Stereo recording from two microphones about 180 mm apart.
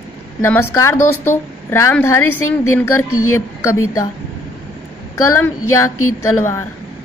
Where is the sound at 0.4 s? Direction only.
15° left (ahead or behind).